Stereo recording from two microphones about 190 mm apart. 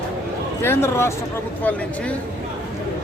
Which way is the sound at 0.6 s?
15° left (ahead or behind).